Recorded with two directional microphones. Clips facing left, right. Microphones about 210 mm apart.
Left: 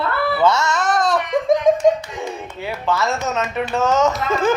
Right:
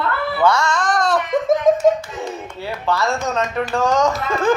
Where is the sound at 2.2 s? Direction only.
Centre (ahead or behind).